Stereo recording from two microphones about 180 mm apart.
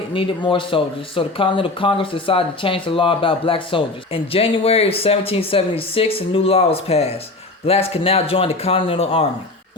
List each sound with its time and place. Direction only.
0.1 s speech: 30° left (ahead or behind)